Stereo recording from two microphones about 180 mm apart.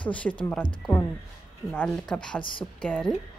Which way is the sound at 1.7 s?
5° left (ahead or behind).